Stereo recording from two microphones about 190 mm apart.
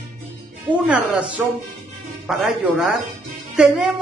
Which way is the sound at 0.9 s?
5° right (ahead or behind).